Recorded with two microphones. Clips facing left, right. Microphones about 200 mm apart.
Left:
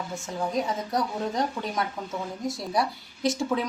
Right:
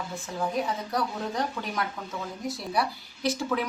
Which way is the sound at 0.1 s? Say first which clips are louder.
Left 1 dB; 20° left (ahead or behind).